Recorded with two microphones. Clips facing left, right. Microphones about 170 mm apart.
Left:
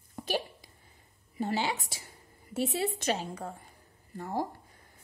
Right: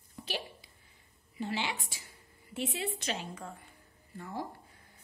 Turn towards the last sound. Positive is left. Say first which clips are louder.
# left 6 dB
turn(degrees=40)  # may be behind; listen again after turning